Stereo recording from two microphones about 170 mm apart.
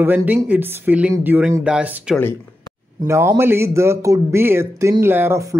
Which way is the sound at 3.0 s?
15° right (ahead or behind).